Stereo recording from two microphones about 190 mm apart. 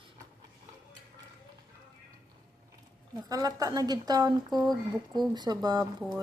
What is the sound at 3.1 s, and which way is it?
Speech, 20° right (ahead or behind).